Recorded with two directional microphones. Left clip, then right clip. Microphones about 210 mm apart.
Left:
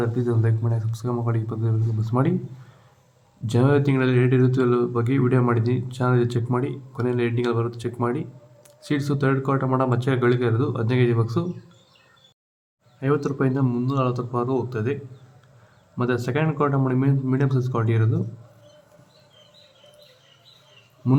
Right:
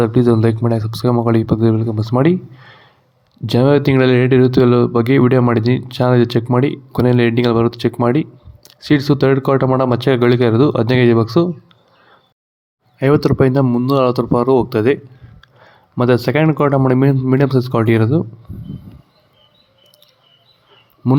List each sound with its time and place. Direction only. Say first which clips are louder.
0.0 s speech: right 12 dB; 45° right (ahead or behind)
13.0 s speech: right 10 dB; 35° right (ahead or behind)
16.0 s speech: right 10 dB; 35° right (ahead or behind)
21.0 s speech: right 7 dB; 25° right (ahead or behind)